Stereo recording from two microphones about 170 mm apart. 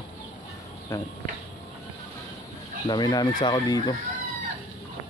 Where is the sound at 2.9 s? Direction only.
25° left (ahead or behind).